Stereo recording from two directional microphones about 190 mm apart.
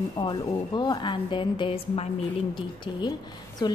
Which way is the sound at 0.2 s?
25° left (ahead or behind).